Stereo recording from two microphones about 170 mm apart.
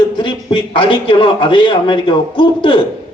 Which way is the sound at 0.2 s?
30° left (ahead or behind).